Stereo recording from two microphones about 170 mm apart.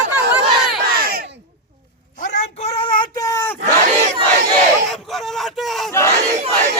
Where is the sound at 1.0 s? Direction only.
60° right (ahead or behind); by 1.4 s 75° right (ahead or behind).